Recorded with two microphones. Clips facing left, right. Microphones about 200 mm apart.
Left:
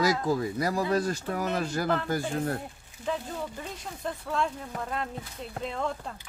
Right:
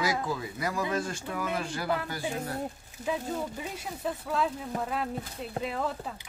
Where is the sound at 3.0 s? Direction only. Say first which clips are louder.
Right 1 dB; 10° right (ahead or behind).